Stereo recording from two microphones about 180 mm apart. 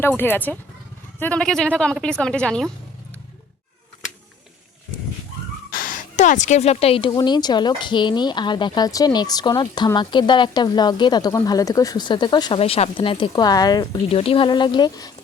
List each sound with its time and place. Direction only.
0.2 s a woman's voice: 10° left (ahead or behind)
5.7 s speech: 50° left (ahead or behind); by 15.1 s 20° left (ahead or behind)